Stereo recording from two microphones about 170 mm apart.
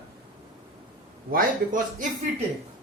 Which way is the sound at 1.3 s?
55° right (ahead or behind).